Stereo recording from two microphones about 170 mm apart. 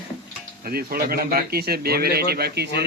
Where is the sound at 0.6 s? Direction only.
60° right (ahead or behind).